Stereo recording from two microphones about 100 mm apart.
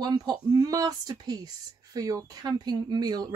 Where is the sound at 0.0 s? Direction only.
45° right (ahead or behind).